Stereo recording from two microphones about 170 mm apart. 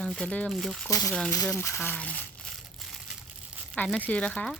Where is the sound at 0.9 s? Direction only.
20° left (ahead or behind).